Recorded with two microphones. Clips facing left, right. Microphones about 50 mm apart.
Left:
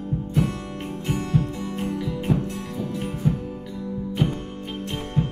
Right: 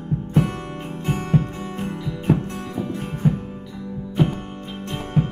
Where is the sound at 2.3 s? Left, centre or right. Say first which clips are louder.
Right 6 dB; right.